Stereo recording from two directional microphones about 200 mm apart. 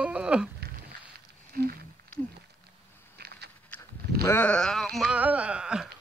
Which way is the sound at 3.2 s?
55° right (ahead or behind).